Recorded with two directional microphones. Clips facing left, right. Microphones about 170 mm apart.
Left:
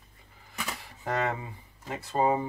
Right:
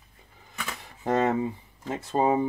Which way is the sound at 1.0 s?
25° right (ahead or behind).